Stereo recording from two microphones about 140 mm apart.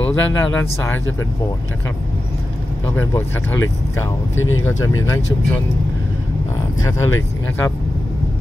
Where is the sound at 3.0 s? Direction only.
15° left (ahead or behind).